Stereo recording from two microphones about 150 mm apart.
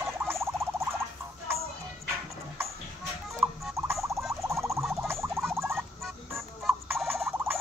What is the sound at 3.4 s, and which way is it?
Turkey, centre (ahead or behind).